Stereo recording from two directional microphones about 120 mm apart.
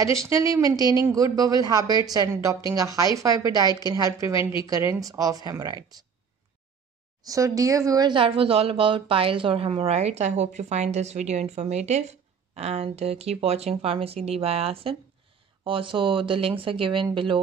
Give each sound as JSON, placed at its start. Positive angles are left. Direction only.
{"t": 0.0, "sound": "a woman's voice", "side_deg": -30}
{"t": 7.2, "sound": "a woman's voice", "side_deg": -30}
{"t": 8.1, "sound": "a woman's voice", "side_deg": -45}